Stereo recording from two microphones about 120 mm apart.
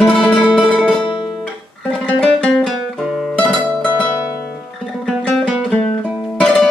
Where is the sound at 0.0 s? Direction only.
5° left (ahead or behind).